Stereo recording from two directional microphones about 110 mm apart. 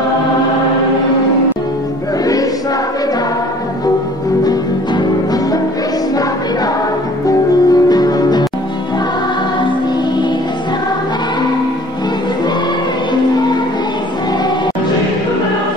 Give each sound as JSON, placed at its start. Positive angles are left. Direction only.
{"t": 4.5, "sound": "music", "side_deg": 35}
{"t": 7.2, "sound": "music", "side_deg": 35}